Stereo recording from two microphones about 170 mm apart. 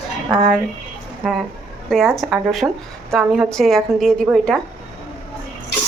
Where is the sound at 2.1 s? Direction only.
Centre (ahead or behind).